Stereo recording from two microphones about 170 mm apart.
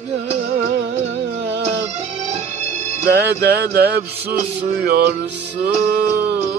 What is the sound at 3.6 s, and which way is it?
Music, 70° right (ahead or behind).